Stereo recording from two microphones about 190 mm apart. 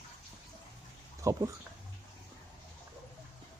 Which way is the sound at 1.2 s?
15° right (ahead or behind).